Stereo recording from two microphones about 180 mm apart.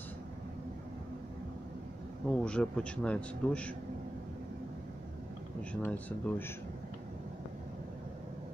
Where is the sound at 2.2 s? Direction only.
5° left (ahead or behind).